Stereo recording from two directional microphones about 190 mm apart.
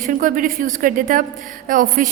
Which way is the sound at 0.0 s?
45° right (ahead or behind).